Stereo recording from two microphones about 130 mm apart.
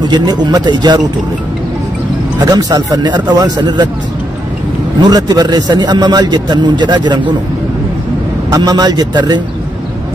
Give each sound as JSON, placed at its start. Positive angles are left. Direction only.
{"t": 0.0, "sound": "a man's voice", "side_deg": -35}
{"t": 2.3, "sound": "a man's voice", "side_deg": -30}
{"t": 5.0, "sound": "a man's voice", "side_deg": -30}
{"t": 8.5, "sound": "a man's voice", "side_deg": -30}